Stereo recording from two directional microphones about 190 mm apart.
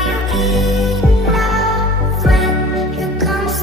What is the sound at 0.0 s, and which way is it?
Music, centre (ahead or behind).